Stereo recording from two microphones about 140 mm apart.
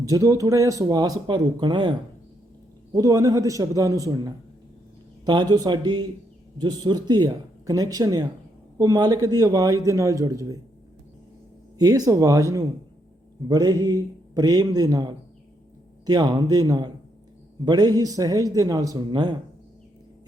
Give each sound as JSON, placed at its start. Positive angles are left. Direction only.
{"t": 0.0, "sound": "speech", "side_deg": -25}
{"t": 11.8, "sound": "speech", "side_deg": -25}